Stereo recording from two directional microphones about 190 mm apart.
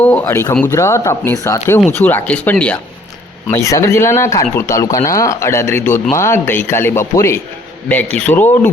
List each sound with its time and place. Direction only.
0.0 s speech: 10° left (ahead or behind)